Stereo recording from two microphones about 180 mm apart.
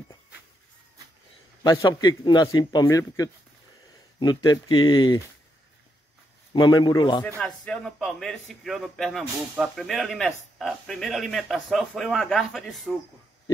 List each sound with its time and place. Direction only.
1.6 s a man's voice: 20° left (ahead or behind)
6.5 s a man's voice: 25° left (ahead or behind)
7.2 s a man's voice: 5° left (ahead or behind)